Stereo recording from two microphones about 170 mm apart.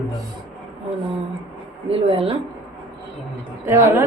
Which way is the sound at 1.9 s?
35° right (ahead or behind).